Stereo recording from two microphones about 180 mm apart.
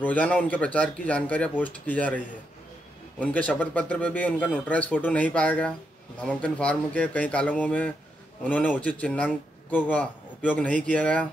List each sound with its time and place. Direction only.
0.0 s a man's voice: 10° left (ahead or behind)